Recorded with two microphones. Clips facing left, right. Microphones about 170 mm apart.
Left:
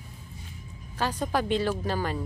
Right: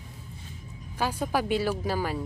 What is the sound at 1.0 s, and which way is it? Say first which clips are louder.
A woman's voice: even; 10° right (ahead or behind).